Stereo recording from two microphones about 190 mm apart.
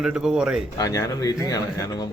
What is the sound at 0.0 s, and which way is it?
Speech, 5° right (ahead or behind).